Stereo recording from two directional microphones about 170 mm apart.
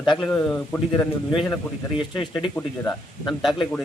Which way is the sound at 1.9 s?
30° left (ahead or behind).